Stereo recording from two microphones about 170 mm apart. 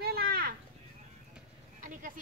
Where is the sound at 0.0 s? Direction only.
65° right (ahead or behind).